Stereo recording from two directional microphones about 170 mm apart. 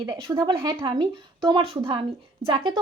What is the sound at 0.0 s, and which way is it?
Speech, 25° right (ahead or behind).